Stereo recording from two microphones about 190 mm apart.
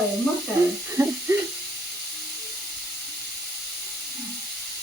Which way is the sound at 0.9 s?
15° right (ahead or behind).